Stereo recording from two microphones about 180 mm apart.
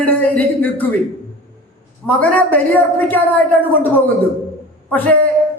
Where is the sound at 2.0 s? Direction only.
10° left (ahead or behind).